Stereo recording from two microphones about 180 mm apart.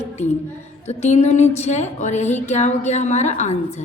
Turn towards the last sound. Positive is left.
turn(degrees=40)  # may be behind; listen again after turning